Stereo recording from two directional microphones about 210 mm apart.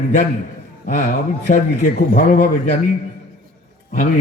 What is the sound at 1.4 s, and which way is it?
A man's voice, 40° left (ahead or behind).